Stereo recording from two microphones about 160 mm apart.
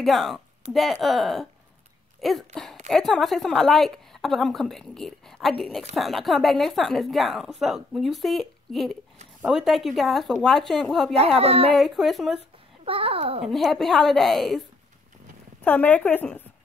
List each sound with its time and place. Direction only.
0.0 s a woman's voice: centre (ahead or behind)
11.1 s a child's voice: 40° right (ahead or behind)
11.7 s a woman's voice: centre (ahead or behind)
12.8 s a child's voice: 35° right (ahead or behind)
13.5 s a woman's voice: centre (ahead or behind)
15.6 s a woman's voice: 10° left (ahead or behind)